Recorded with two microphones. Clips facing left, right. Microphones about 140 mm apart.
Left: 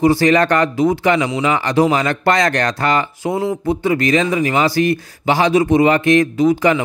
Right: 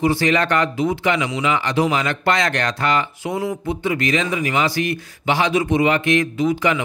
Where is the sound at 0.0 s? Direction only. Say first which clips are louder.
Left 5 dB; 40° left (ahead or behind).